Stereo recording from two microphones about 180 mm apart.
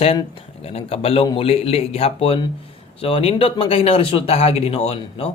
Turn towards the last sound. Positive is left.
turn(degrees=35)  # may be behind; listen again after turning